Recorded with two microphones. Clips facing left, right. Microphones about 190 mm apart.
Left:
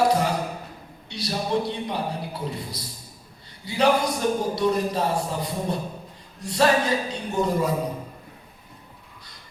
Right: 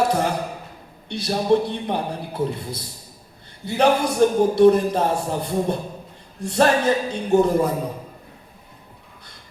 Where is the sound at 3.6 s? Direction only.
50° right (ahead or behind).